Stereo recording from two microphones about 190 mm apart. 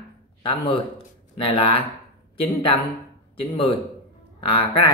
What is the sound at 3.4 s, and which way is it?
Speech, 25° left (ahead or behind).